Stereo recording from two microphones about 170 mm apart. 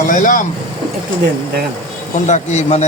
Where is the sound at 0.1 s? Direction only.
50° left (ahead or behind).